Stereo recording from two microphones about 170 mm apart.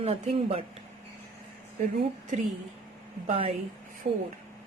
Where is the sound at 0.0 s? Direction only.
35° right (ahead or behind).